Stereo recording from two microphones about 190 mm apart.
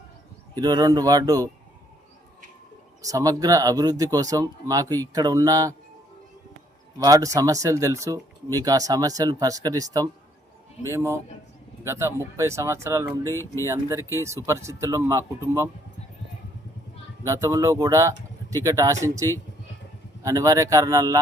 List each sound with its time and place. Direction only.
0.5 s speech: 20° right (ahead or behind)
3.0 s speech: 20° right (ahead or behind)
7.0 s speech: 15° right (ahead or behind)
13.3 s speech: 15° left (ahead or behind)
13.7 s speech: 15° right (ahead or behind)
17.2 s speech: 15° right (ahead or behind)